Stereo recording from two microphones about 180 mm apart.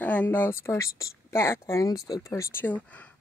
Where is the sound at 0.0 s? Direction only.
10° left (ahead or behind).